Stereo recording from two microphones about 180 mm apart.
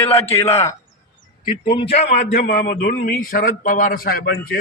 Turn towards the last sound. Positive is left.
turn(degrees=55)  # may be behind; listen again after turning